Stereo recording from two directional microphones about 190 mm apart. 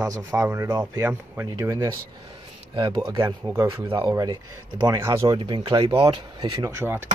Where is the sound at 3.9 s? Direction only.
25° right (ahead or behind).